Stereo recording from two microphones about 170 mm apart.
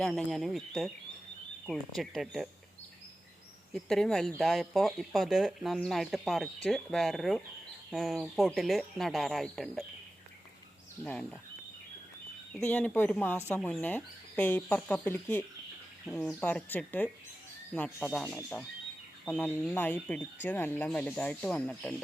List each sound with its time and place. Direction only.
0.0 s speech: 5° left (ahead or behind)
3.8 s speech: 5° left (ahead or behind)
11.0 s speech: 5° left (ahead or behind)
12.5 s speech: 10° left (ahead or behind)
16.0 s speech: centre (ahead or behind)